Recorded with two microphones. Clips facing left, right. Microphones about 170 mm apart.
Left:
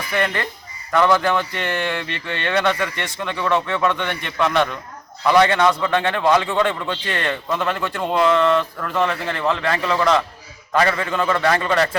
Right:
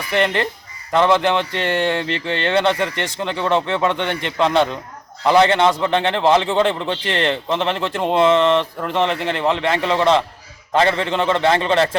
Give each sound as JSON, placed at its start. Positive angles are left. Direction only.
{"t": 0.1, "sound": "a man's voice", "side_deg": -25}